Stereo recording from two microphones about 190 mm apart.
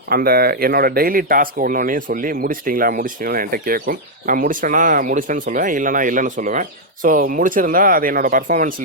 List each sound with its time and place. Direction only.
0.1 s speech: 50° right (ahead or behind)